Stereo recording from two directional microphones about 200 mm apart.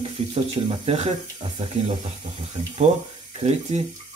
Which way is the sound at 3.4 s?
35° right (ahead or behind).